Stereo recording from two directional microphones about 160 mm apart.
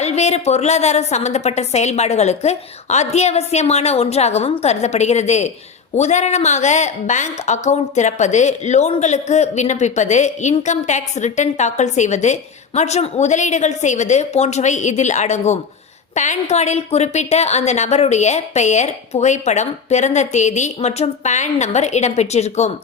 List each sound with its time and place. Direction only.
0.0 s a woman's voice: 45° left (ahead or behind)